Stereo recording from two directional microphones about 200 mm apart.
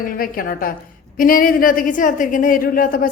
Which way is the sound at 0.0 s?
45° left (ahead or behind).